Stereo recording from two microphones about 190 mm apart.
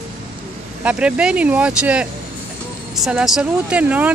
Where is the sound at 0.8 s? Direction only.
5° right (ahead or behind).